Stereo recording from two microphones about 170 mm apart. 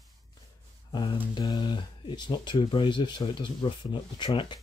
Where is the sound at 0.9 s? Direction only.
25° left (ahead or behind).